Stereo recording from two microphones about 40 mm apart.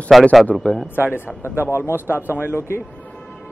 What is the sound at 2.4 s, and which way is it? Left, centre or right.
Speech, left.